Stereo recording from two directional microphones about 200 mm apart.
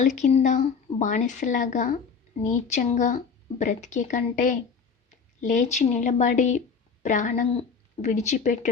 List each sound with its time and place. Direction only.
0.0 s a woman's voice: 35° left (ahead or behind)